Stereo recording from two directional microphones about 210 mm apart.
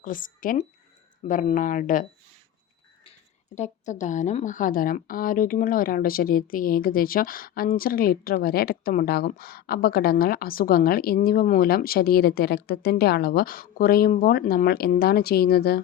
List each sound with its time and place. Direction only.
0.0 s speech: 40° left (ahead or behind)
3.5 s a woman's voice: 35° left (ahead or behind)